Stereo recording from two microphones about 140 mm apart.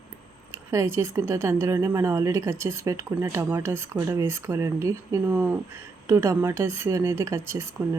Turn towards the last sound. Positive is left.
turn(degrees=-20)  # may be behind; listen again after turning